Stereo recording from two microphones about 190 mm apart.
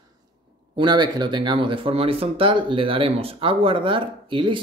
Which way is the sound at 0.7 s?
25° right (ahead or behind).